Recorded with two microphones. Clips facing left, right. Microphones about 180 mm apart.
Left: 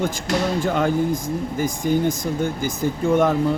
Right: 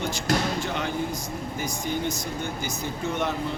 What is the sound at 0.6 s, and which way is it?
Speech, 50° left (ahead or behind).